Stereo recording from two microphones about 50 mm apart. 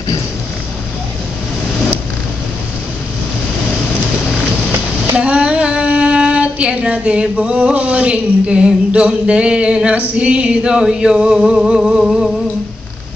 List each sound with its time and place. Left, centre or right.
5.2 s female singing: right